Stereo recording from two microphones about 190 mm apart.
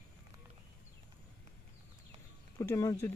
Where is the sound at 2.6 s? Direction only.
20° left (ahead or behind).